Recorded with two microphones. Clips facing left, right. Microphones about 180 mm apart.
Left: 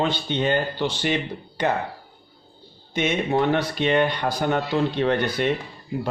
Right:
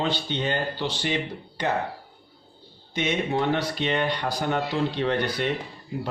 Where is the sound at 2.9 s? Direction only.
55° left (ahead or behind).